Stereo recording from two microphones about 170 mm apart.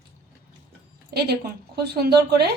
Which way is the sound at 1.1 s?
70° right (ahead or behind).